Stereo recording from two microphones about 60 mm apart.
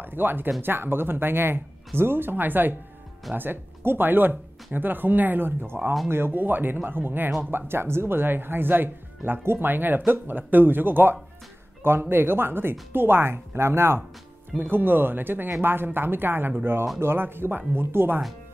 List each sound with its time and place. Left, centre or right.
0.0 s speech: right